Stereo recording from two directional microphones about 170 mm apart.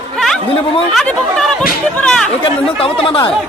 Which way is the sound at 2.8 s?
30° left (ahead or behind).